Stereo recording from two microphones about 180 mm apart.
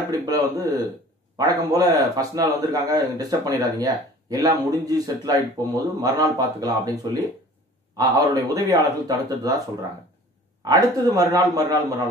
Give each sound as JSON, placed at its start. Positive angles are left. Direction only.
{"t": 0.1, "sound": "speech", "side_deg": -20}
{"t": 10.6, "sound": "speech", "side_deg": -20}